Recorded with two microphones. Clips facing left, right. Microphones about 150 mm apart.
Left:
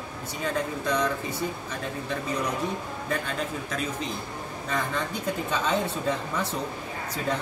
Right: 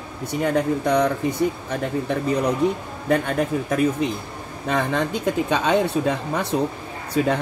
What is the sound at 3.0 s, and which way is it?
Speech, 60° right (ahead or behind).